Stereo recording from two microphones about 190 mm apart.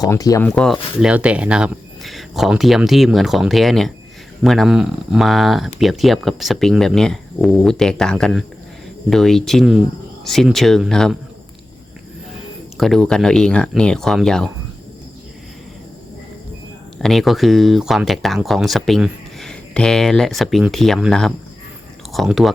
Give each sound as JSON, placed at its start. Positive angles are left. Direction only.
{"t": 0.0, "sound": "speech", "side_deg": 20}
{"t": 0.4, "sound": "speech", "side_deg": 0}
{"t": 12.7, "sound": "speech", "side_deg": 0}
{"t": 17.0, "sound": "speech", "side_deg": 0}